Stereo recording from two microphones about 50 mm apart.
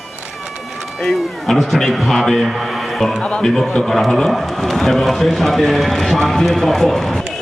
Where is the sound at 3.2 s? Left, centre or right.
Centre.